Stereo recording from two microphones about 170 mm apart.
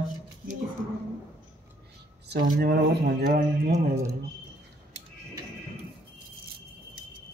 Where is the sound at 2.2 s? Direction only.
75° right (ahead or behind).